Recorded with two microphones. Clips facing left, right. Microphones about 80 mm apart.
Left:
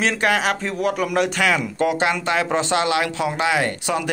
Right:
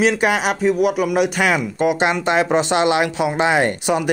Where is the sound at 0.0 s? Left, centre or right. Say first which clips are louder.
Right 3 dB; centre.